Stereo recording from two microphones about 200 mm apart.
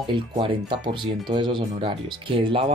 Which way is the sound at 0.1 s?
25° right (ahead or behind).